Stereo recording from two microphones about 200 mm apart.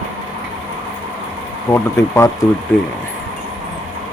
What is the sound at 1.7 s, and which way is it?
Speech, 15° left (ahead or behind).